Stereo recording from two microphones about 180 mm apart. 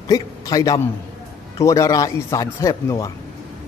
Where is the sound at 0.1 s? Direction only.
20° left (ahead or behind).